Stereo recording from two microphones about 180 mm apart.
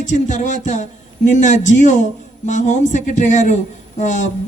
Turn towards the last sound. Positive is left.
turn(degrees=40)  # may be behind; listen again after turning